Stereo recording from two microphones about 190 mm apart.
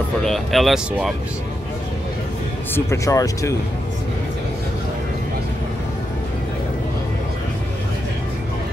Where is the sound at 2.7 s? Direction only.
15° left (ahead or behind).